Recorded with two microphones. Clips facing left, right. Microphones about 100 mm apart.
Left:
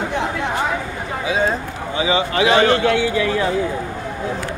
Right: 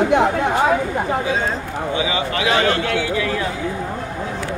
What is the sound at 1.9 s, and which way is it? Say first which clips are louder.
A man's voice: left 4 dB; 30° left (ahead or behind).